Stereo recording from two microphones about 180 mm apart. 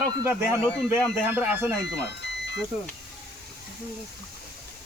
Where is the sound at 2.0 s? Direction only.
75° left (ahead or behind).